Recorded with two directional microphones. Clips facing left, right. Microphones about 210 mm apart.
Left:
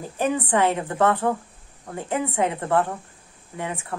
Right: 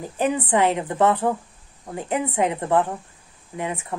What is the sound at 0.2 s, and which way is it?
A woman's voice, 15° right (ahead or behind).